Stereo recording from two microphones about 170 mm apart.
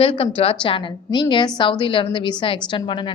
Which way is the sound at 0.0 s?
30° left (ahead or behind).